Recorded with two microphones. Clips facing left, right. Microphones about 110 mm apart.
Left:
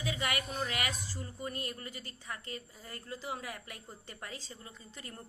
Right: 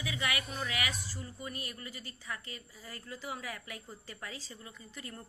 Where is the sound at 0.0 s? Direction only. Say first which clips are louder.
Left 1 dB; 25° left (ahead or behind).